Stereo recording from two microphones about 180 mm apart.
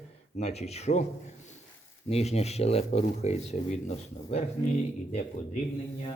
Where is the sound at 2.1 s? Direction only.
35° left (ahead or behind).